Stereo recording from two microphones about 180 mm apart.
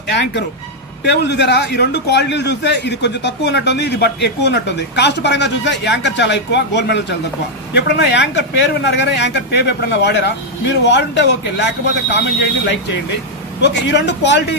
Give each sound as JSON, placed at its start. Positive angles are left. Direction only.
{"t": 0.1, "sound": "a man's voice", "side_deg": 75}